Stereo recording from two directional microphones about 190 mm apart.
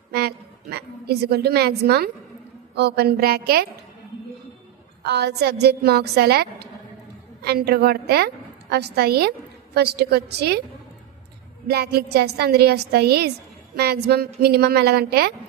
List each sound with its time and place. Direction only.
0.1 s a sound: 55° right (ahead or behind)
2.7 s a woman's voice: 60° right (ahead or behind)
5.0 s a woman's voice: 60° right (ahead or behind)
11.6 s a woman's voice: 55° right (ahead or behind)